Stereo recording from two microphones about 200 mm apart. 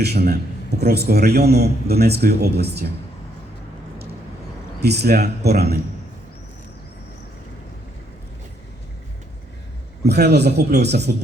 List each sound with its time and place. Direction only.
0.0 s a man's voice: 55° right (ahead or behind)
4.8 s a man's voice: 55° right (ahead or behind)
10.0 s a man's voice: 55° right (ahead or behind)